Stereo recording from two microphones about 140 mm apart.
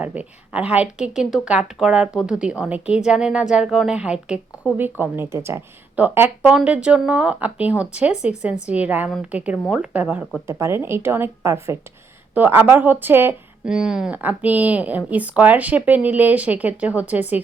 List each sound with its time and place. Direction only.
0.0 s a woman's voice: 10° right (ahead or behind)
5.1 s a woman's voice: 20° right (ahead or behind)